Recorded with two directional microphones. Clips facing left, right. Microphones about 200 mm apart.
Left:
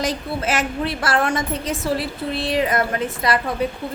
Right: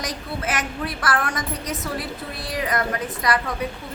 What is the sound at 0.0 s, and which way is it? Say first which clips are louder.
A woman's voice: left 5 dB; 25° left (ahead or behind).